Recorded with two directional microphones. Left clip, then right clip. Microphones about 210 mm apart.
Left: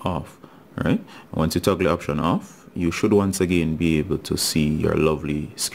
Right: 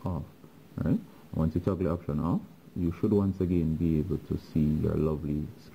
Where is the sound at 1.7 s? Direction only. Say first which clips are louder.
Left 13 dB; 20° left (ahead or behind).